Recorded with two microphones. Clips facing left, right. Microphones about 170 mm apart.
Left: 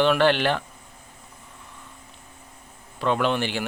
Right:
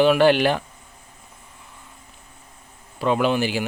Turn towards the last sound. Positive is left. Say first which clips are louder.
# right 3 dB
turn(degrees=-5)  # may be behind; listen again after turning